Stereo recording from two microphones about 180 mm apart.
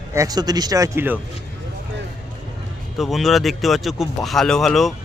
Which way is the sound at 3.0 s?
Centre (ahead or behind).